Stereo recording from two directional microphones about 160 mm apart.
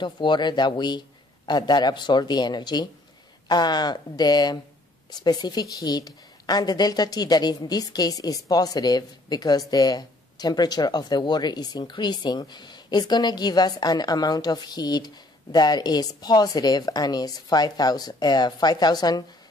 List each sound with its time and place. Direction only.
0.0 s a woman's voice: 30° left (ahead or behind)